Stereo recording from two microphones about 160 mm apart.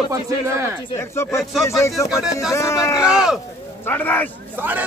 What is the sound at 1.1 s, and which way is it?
Speech, 15° left (ahead or behind).